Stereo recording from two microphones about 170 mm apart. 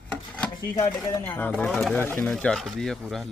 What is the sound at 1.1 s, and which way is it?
Speech, 10° left (ahead or behind).